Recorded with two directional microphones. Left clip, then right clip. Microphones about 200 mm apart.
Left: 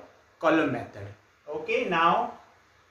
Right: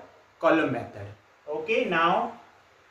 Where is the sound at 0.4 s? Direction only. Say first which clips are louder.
Right 1 dB; 20° left (ahead or behind).